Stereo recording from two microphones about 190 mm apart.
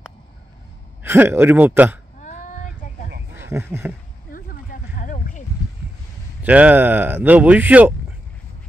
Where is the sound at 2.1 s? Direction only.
40° left (ahead or behind).